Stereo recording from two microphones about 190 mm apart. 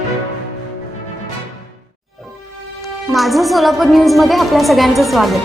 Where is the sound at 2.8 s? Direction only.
Centre (ahead or behind).